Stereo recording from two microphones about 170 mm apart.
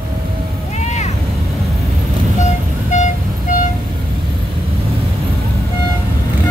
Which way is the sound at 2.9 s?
45° left (ahead or behind).